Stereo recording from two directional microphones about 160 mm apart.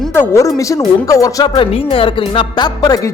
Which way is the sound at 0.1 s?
15° left (ahead or behind).